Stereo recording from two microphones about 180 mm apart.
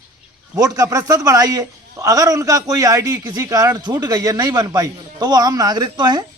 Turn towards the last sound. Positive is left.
turn(degrees=-20)  # may be behind; listen again after turning